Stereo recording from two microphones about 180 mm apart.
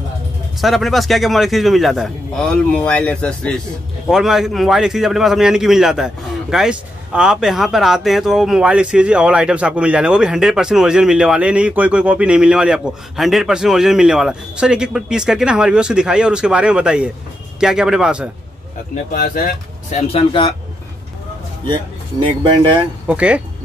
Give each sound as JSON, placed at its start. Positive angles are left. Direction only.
{"t": 0.6, "sound": "a man's voice", "side_deg": 0}
{"t": 19.1, "sound": "speech", "side_deg": 55}
{"t": 20.1, "sound": "speech", "side_deg": 30}
{"t": 22.2, "sound": "speech", "side_deg": -25}
{"t": 23.0, "sound": "speech", "side_deg": -5}